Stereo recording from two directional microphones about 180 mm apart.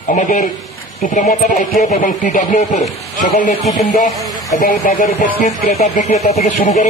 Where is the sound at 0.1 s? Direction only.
45° left (ahead or behind).